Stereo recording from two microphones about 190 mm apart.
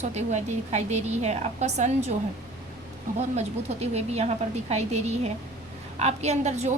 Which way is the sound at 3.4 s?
35° right (ahead or behind).